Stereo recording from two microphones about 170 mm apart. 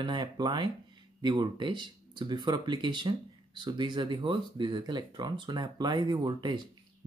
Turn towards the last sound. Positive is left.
turn(degrees=-25)  # may be behind; listen again after turning